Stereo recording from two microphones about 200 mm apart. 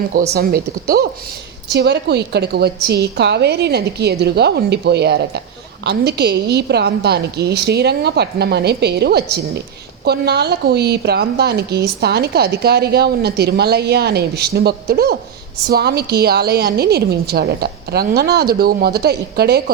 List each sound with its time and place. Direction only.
0.3 s a woman's voice: 50° right (ahead or behind)